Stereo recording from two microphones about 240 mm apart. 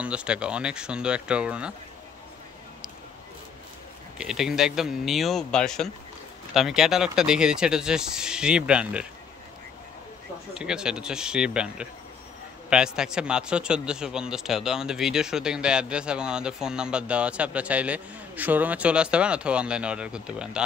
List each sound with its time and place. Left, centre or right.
0.0 s speech: centre
4.2 s speech: centre
10.5 s speech: centre